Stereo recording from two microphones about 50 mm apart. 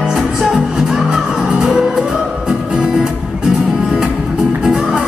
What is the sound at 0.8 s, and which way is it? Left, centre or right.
Music, centre.